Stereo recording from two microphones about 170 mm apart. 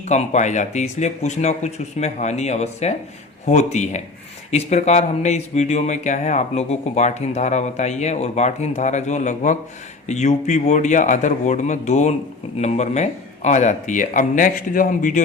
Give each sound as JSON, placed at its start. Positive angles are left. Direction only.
{"t": 0.1, "sound": "speech", "side_deg": 45}